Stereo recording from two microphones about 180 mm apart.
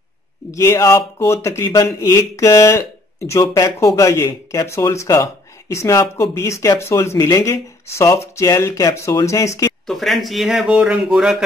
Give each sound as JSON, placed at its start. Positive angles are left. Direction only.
{"t": 0.5, "sound": "speech", "side_deg": 15}
{"t": 9.8, "sound": "speech", "side_deg": 0}